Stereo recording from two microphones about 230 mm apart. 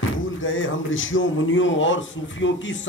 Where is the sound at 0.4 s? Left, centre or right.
Left.